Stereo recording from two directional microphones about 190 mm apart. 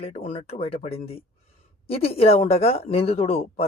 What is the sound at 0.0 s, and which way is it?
Speech, 30° left (ahead or behind).